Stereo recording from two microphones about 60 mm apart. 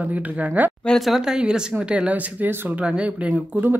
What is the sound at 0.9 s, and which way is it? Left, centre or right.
Speech, centre.